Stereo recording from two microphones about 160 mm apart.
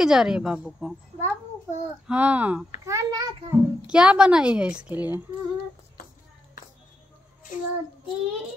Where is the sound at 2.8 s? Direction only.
20° right (ahead or behind).